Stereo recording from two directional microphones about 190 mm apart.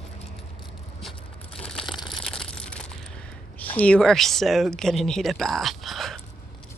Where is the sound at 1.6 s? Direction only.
5° left (ahead or behind).